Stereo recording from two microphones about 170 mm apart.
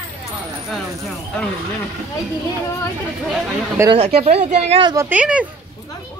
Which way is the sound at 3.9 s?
35° right (ahead or behind).